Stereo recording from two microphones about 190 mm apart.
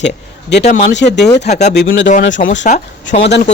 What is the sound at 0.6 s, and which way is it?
Speech, 35° left (ahead or behind).